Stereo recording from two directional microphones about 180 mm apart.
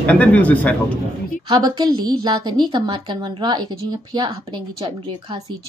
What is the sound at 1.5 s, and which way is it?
A woman's voice, 25° right (ahead or behind).